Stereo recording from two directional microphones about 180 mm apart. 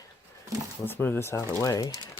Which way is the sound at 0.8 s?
10° left (ahead or behind).